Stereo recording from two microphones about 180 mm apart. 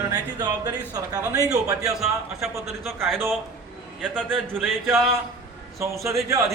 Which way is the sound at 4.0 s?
5° left (ahead or behind).